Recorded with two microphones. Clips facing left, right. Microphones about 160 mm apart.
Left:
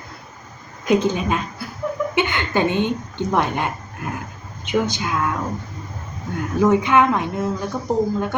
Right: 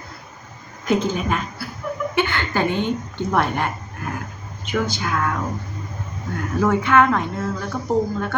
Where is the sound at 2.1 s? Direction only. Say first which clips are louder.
Even; 20° left (ahead or behind).